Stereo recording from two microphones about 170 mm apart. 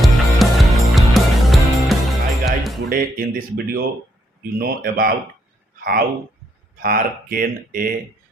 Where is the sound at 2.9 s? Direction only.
60° right (ahead or behind).